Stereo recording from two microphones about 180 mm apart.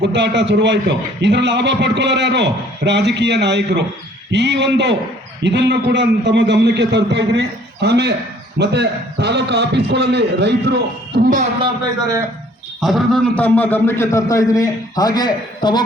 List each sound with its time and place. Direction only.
0.0 s a man's voice: 80° right; by 11.4 s 50° right (ahead or behind)
12.8 s a man's voice: centre (ahead or behind); by 15.8 s 25° left (ahead or behind)